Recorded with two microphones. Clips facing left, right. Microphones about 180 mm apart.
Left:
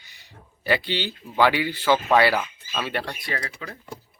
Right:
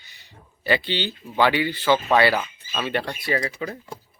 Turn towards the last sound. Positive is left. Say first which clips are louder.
# right 7 dB
turn(degrees=-20)  # may be behind; listen again after turning